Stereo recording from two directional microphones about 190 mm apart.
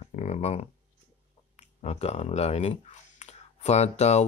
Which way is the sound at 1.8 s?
35° left (ahead or behind).